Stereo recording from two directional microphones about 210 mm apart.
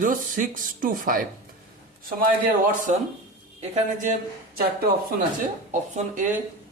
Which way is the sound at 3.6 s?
35° right (ahead or behind).